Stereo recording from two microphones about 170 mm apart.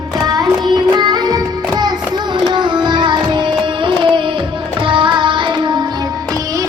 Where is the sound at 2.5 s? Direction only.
25° right (ahead or behind).